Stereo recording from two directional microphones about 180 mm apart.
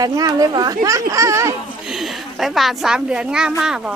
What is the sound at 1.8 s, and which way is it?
A woman's voice, centre (ahead or behind).